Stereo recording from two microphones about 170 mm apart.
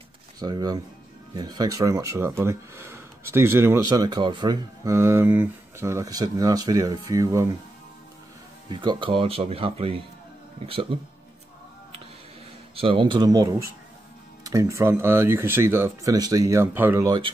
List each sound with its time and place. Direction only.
0.4 s speech: 25° right (ahead or behind)
8.6 s speech: 25° right (ahead or behind)
12.7 s speech: 30° right (ahead or behind); by 17.1 s 10° right (ahead or behind)